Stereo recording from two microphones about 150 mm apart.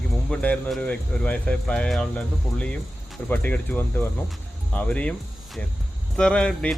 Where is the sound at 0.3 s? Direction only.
5° left (ahead or behind).